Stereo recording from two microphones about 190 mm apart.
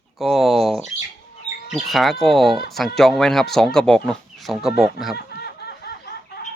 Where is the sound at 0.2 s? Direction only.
Centre (ahead or behind).